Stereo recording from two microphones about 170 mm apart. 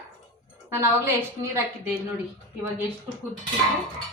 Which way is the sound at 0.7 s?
15° right (ahead or behind).